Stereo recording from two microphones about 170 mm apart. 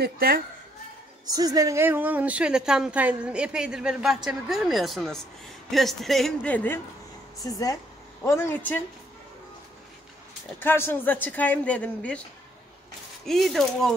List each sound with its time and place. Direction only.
0.0 s a woman's voice: 60° right (ahead or behind)
1.3 s a woman's voice: 20° right (ahead or behind); by 6.8 s 10° left (ahead or behind)
7.4 s speech: 20° left (ahead or behind)
10.6 s speech: 10° left (ahead or behind)
13.2 s a woman's voice: centre (ahead or behind)